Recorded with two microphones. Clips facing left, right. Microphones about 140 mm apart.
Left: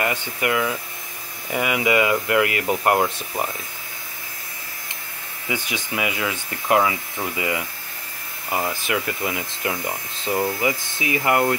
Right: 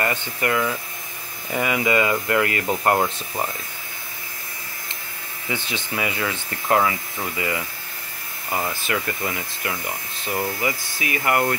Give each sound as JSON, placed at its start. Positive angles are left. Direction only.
{"t": 0.0, "sound": "speech", "side_deg": 10}
{"t": 5.5, "sound": "speech", "side_deg": 10}